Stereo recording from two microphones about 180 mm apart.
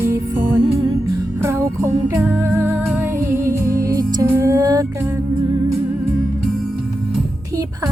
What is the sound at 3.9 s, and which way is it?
Music, 20° right (ahead or behind).